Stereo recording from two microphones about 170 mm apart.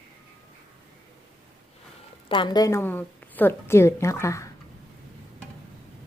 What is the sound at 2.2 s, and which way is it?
A woman's voice, 30° left (ahead or behind).